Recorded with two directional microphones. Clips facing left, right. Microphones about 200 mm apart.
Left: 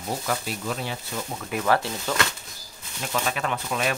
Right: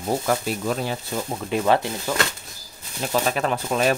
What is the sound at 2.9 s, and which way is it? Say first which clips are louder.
Speech: right 5 dB; 35° right (ahead or behind).